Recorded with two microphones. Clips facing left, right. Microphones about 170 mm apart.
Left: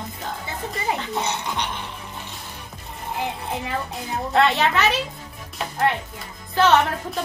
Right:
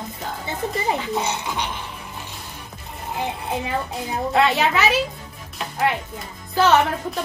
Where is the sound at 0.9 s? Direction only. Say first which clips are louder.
Right 2 dB; 5° right (ahead or behind).